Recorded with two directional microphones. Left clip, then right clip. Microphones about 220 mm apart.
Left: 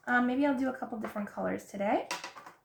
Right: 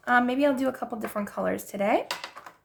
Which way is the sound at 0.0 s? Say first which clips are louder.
Right 6 dB; 45° right (ahead or behind).